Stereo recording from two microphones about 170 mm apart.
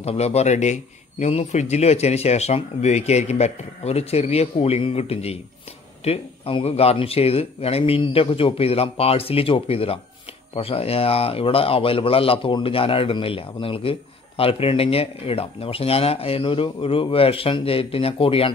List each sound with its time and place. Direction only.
0.0 s a man's voice: 40° left (ahead or behind)